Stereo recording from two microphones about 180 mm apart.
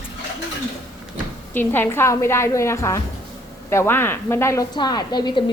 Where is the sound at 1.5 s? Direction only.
10° left (ahead or behind).